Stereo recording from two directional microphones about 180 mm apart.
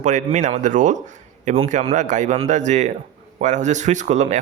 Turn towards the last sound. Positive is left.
turn(degrees=-40)  # may be behind; listen again after turning